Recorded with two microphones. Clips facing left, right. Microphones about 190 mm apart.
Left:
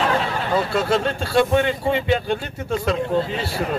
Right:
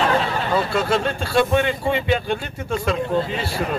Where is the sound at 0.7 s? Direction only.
35° left (ahead or behind).